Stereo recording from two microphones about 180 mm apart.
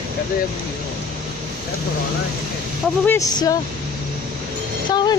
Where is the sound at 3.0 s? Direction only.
10° left (ahead or behind).